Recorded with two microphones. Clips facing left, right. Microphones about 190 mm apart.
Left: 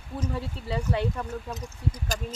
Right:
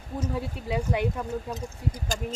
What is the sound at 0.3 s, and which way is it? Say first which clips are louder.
Speech: right 3 dB; 10° right (ahead or behind).